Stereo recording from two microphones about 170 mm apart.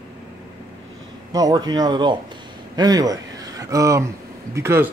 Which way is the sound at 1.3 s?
20° right (ahead or behind).